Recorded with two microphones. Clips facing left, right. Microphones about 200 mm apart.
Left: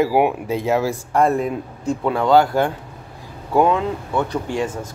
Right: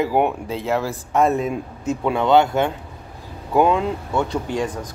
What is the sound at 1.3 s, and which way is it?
Speech, 20° right (ahead or behind).